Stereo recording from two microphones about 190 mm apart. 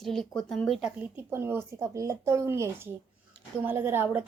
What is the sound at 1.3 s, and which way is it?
Speech, 15° right (ahead or behind).